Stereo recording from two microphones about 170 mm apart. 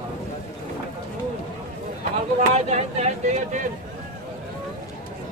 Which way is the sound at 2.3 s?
40° right (ahead or behind).